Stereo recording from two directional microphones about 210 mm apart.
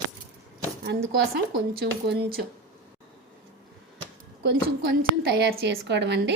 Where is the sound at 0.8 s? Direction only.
55° right (ahead or behind).